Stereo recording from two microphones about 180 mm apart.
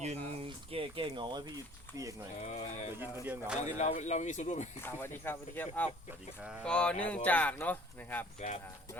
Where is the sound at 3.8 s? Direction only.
40° left (ahead or behind).